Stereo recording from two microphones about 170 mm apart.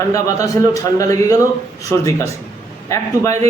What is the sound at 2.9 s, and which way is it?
Speech, 15° left (ahead or behind).